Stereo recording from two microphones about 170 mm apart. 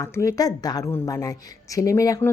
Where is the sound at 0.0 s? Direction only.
15° left (ahead or behind).